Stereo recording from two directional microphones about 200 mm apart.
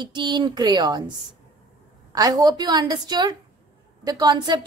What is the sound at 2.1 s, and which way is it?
A woman's voice, 20° right (ahead or behind).